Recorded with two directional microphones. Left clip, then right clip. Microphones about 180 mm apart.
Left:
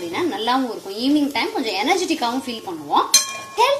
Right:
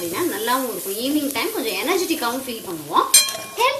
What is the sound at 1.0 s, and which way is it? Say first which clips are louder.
Speech: left 4 dB; 40° left (ahead or behind).